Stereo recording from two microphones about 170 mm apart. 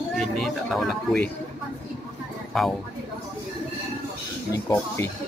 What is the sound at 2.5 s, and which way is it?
Speech, centre (ahead or behind).